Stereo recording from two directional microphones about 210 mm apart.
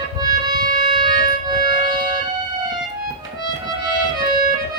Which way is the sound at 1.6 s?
20° right (ahead or behind).